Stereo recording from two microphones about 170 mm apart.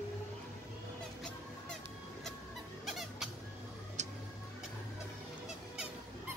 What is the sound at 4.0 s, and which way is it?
Tick-tock, 45° right (ahead or behind).